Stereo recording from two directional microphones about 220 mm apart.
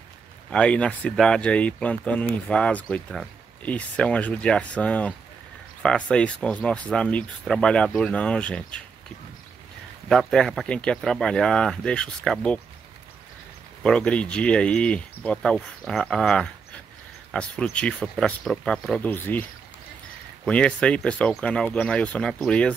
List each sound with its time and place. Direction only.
0.5 s speech: 5° left (ahead or behind)
10.0 s speech: centre (ahead or behind)
13.8 s speech: 5° left (ahead or behind)
20.4 s speech: 5° left (ahead or behind)